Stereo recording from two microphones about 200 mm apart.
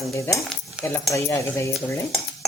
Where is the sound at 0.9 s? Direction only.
15° left (ahead or behind).